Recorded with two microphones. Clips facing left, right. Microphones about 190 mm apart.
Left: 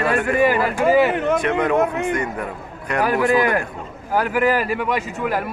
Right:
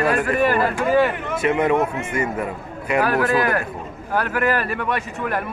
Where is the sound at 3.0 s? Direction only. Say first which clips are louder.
Left 2 dB; 15° left (ahead or behind).